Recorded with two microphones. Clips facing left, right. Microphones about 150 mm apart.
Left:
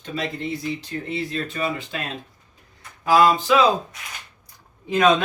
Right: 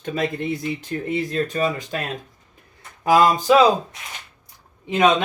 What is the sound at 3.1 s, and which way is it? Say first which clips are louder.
Speech: even; 15° right (ahead or behind).